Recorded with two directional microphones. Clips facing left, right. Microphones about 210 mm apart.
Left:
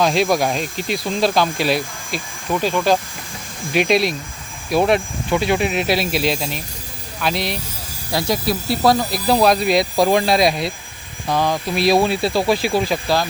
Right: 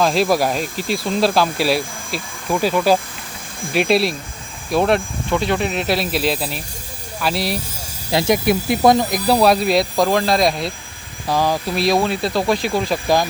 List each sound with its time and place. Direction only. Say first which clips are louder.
0.0 s speech: even; centre (ahead or behind)
8.1 s speech: right 4 dB; 20° right (ahead or behind); by 9.8 s centre (ahead or behind)
9.9 s speech: left 1 dB; 15° left (ahead or behind)
11.3 s speech: right 1 dB; 5° right (ahead or behind)
11.7 s speech: left 4 dB; 5° left (ahead or behind)